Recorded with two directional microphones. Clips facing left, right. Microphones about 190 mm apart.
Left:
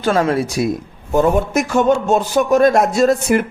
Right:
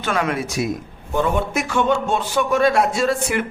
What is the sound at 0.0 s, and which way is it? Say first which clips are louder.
Speech: left 6 dB; 35° left (ahead or behind).